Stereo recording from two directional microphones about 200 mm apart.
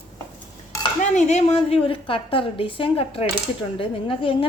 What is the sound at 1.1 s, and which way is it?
A woman's voice, 35° left (ahead or behind).